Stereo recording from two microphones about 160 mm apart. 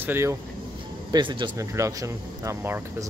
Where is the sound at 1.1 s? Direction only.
30° right (ahead or behind).